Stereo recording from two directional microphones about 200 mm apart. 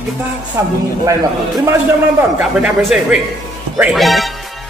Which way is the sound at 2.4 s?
Centre (ahead or behind).